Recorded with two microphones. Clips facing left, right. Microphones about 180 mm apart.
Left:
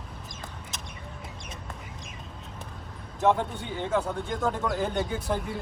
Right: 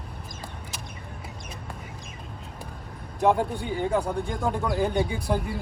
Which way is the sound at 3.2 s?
10° right (ahead or behind).